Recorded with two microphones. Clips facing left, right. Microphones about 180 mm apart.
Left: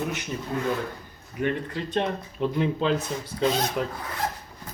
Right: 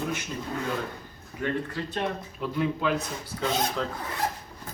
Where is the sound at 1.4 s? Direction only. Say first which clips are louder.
Left 2 dB; 20° left (ahead or behind).